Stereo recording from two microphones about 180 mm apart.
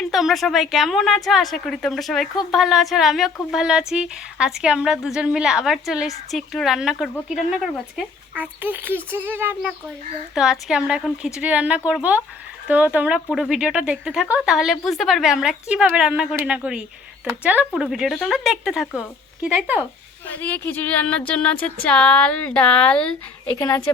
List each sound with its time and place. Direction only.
0.0 s speech: centre (ahead or behind)
20.2 s speech: 10° left (ahead or behind)
23.6 s a woman's voice: 20° left (ahead or behind)